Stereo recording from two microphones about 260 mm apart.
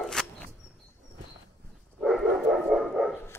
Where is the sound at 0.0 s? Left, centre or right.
Centre.